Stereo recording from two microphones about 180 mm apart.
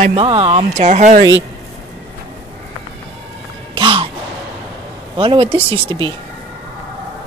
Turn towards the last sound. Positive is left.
turn(degrees=-25)  # may be behind; listen again after turning